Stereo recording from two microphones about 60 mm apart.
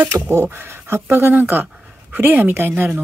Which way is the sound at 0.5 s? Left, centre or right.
Right.